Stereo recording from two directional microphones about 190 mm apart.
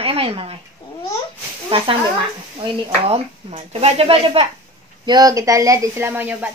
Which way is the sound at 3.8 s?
30° right (ahead or behind).